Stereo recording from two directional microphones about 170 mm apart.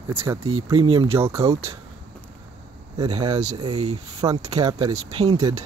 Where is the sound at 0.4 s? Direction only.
35° right (ahead or behind).